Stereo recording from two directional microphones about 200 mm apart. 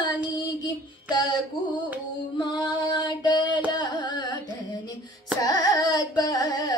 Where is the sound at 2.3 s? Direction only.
20° left (ahead or behind).